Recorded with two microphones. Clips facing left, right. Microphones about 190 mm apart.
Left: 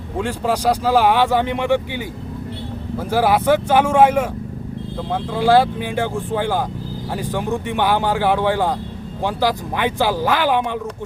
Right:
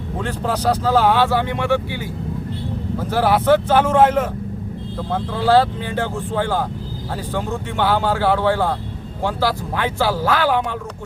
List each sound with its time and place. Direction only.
0.2 s speech: 10° left (ahead or behind)
3.0 s speech: 10° left (ahead or behind)